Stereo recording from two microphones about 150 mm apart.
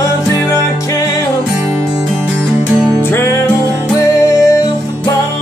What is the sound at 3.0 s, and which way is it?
Music, 15° left (ahead or behind).